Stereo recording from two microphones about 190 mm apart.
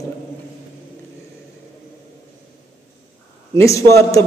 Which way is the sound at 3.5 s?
15° left (ahead or behind).